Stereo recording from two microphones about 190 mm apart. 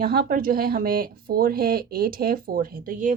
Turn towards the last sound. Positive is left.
turn(degrees=-45)  # may be behind; listen again after turning